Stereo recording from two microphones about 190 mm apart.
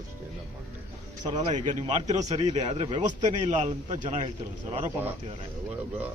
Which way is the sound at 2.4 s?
25° right (ahead or behind).